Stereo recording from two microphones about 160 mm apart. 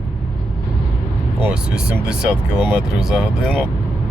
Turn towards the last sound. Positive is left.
turn(degrees=-5)  # may be behind; listen again after turning